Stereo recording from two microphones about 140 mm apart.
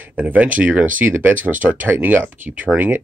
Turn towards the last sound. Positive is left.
turn(degrees=-10)  # may be behind; listen again after turning